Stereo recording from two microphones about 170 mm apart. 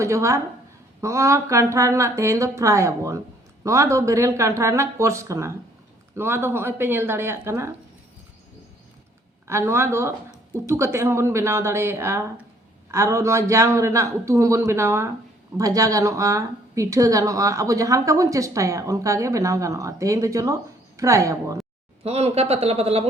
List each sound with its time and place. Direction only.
0.0 s speech: 15° right (ahead or behind)
9.5 s speech: 15° right (ahead or behind)
22.0 s speech: 35° right (ahead or behind)